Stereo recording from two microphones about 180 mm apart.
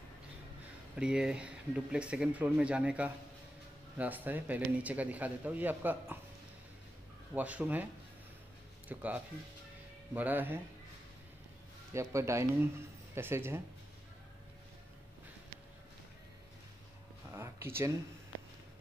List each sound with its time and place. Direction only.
0.9 s speech: 5° right (ahead or behind)
7.3 s speech: 10° right (ahead or behind)
11.9 s speech: 15° right (ahead or behind)
17.3 s a sound: 15° right (ahead or behind)